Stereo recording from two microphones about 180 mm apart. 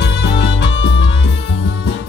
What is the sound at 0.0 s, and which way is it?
Music, 70° left (ahead or behind).